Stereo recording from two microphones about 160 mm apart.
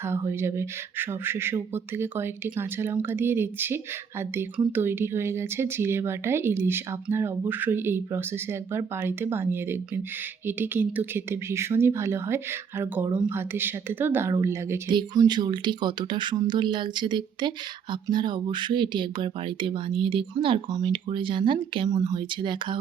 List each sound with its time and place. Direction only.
0.0 s speech: 15° right (ahead or behind)
14.8 s speech: 25° right (ahead or behind)